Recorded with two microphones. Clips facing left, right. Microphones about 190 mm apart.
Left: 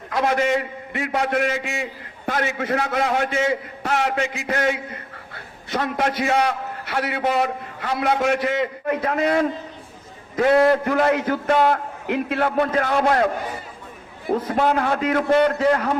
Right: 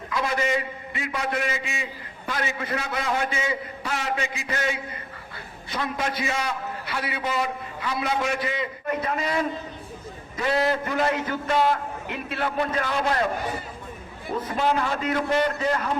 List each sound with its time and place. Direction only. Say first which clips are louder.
0.1 s a man's voice: left 5 dB; 60° left (ahead or behind)
14.4 s a man's voice: left 2 dB; 55° left (ahead or behind)